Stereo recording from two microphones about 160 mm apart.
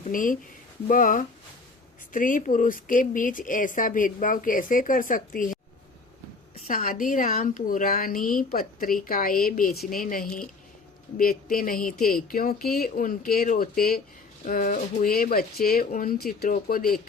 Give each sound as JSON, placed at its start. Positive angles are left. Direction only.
{"t": 0.1, "sound": "a woman's voice", "side_deg": 55}
{"t": 6.7, "sound": "a woman's voice", "side_deg": 60}
{"t": 14.4, "sound": "a woman's voice", "side_deg": 60}